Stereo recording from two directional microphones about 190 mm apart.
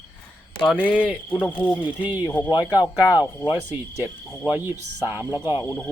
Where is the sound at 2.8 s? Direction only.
5° right (ahead or behind).